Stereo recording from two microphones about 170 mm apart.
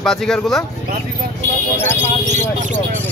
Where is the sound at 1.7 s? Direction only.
15° left (ahead or behind).